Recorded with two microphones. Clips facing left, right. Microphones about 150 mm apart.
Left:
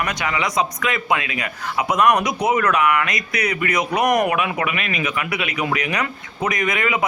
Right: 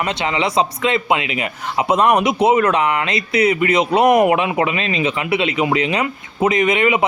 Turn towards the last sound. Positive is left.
turn(degrees=-25)  # may be behind; listen again after turning